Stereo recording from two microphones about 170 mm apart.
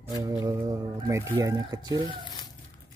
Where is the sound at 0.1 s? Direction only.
20° right (ahead or behind).